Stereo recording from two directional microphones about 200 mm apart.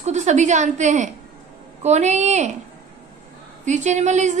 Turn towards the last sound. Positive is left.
turn(degrees=-35)  # may be behind; listen again after turning